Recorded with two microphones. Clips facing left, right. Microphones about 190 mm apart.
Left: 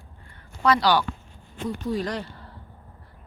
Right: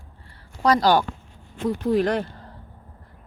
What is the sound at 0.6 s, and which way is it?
Speech, 45° right (ahead or behind).